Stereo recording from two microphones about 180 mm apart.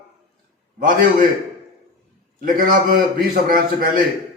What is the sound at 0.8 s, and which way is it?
Speech, 50° right (ahead or behind).